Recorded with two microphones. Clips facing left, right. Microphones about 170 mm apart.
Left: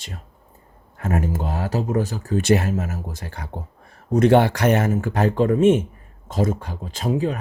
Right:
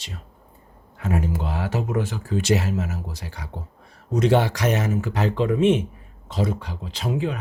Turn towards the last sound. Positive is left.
turn(degrees=45)  # may be behind; listen again after turning